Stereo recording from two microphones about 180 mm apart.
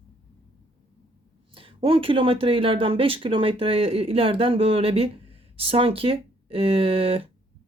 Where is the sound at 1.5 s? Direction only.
30° right (ahead or behind).